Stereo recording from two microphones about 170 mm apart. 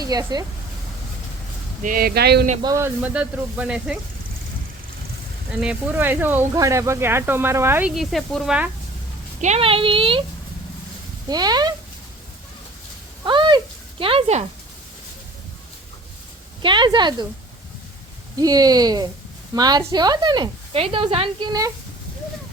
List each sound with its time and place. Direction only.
0.0 s speech: 20° right (ahead or behind)
1.8 s speech: 55° right (ahead or behind)
2.6 s speech: 20° right (ahead or behind)
5.5 s speech: 10° right (ahead or behind)
9.4 s speech: 40° right (ahead or behind)
11.3 s speech: 25° right (ahead or behind)
13.2 s a sound: 30° right (ahead or behind)
14.0 s speech: 35° right (ahead or behind)
16.6 s speech: 25° right (ahead or behind)
18.3 s speech: 20° right (ahead or behind)